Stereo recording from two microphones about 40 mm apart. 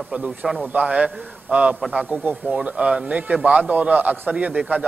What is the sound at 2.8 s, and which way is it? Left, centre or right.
A man's voice, right.